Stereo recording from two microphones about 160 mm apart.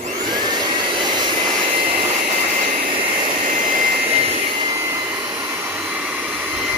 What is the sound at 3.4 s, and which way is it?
Jet engine, 55° right (ahead or behind).